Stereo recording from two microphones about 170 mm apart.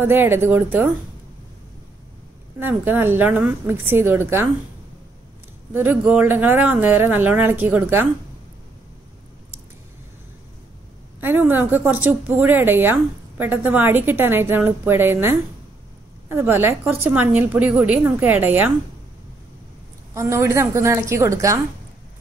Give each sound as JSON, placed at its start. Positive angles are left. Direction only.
{"t": 0.0, "sound": "a woman's voice", "side_deg": -10}
{"t": 2.6, "sound": "a woman's voice", "side_deg": -10}
{"t": 5.7, "sound": "a woman's voice", "side_deg": -10}
{"t": 11.1, "sound": "a woman's voice", "side_deg": -10}
{"t": 20.2, "sound": "a woman's voice", "side_deg": -15}